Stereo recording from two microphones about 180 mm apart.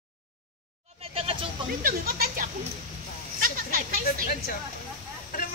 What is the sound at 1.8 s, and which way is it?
Speech, 55° right (ahead or behind).